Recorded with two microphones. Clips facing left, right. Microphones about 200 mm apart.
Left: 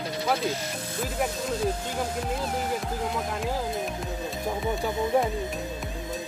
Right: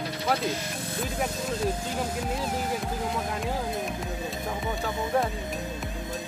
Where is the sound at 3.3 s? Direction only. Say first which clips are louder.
Left 1 dB; centre (ahead or behind).